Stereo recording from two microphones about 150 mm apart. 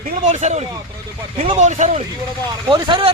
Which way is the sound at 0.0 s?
50° right (ahead or behind).